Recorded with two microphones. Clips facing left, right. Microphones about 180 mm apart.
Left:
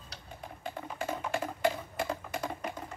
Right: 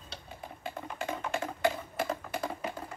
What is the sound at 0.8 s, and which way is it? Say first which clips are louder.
Typing: left 1 dB; 5° left (ahead or behind).